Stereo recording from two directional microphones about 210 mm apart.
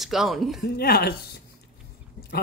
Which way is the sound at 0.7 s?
45° left (ahead or behind).